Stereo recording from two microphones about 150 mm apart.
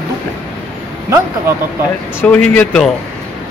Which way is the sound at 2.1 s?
10° left (ahead or behind).